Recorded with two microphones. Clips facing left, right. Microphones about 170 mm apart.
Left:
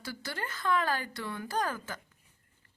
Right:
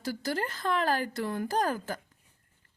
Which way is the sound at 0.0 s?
40° right (ahead or behind).